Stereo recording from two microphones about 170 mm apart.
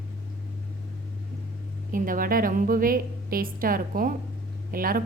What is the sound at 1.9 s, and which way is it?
A woman's voice, 55° right (ahead or behind).